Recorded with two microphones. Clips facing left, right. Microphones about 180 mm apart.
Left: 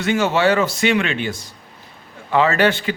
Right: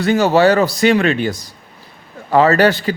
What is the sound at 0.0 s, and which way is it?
Speech, 40° right (ahead or behind).